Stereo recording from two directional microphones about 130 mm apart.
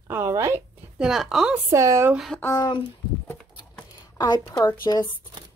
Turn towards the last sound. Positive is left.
turn(degrees=30)  # may be behind; listen again after turning